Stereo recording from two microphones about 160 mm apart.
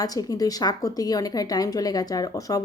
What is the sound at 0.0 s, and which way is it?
A woman's voice, 25° left (ahead or behind).